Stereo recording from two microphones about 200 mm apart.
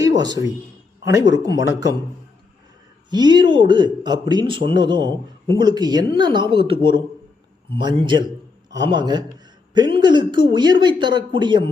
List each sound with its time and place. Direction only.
0.2 s a man's voice: 20° right (ahead or behind)
3.1 s a man's voice: 20° right (ahead or behind)